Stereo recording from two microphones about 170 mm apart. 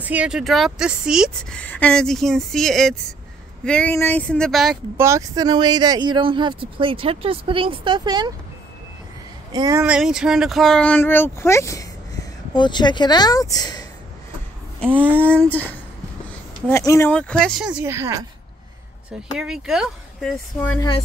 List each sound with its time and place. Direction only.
0.0 s speech: 5° right (ahead or behind)
1.6 s speech: 10° left (ahead or behind)
4.9 s speech: 15° right (ahead or behind)
9.5 s speech: 20° right (ahead or behind)
9.8 s speech: 5° right (ahead or behind); by 13.8 s 20° left (ahead or behind)
15.1 s speech: 10° left (ahead or behind); by 18.2 s 15° right (ahead or behind)
19.3 s speech: 5° right (ahead or behind)